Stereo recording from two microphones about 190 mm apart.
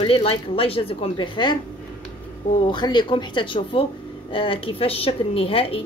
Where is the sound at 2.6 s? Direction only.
25° left (ahead or behind).